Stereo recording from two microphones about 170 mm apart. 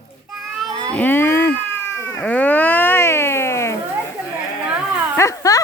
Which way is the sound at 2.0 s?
15° left (ahead or behind).